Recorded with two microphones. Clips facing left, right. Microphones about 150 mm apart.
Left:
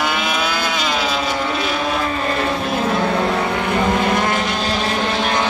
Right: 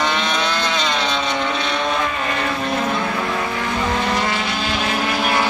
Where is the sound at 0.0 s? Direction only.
5° left (ahead or behind).